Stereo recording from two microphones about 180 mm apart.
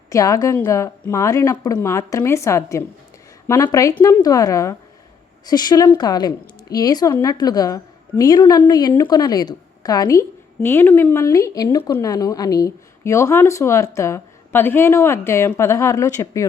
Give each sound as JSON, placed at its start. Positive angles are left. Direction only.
{"t": 0.1, "sound": "a woman's voice", "side_deg": 20}